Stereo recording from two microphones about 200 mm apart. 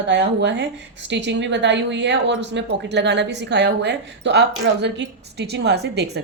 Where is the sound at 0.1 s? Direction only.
60° right (ahead or behind).